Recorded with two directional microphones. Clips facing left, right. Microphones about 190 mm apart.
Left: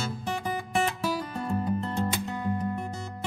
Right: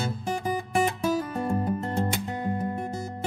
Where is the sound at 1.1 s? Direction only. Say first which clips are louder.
Right 4 dB; 45° right (ahead or behind).